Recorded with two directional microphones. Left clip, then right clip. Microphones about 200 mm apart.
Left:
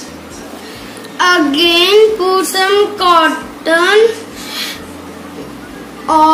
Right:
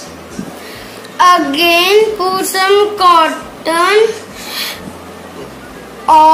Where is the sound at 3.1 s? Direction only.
50° right (ahead or behind).